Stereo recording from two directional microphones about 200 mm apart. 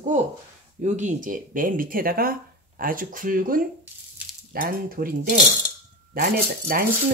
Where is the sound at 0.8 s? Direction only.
40° right (ahead or behind).